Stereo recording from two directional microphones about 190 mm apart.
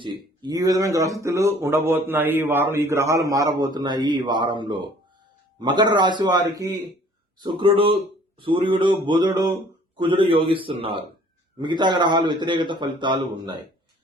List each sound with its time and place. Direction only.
0.0 s a man's voice: 20° right (ahead or behind)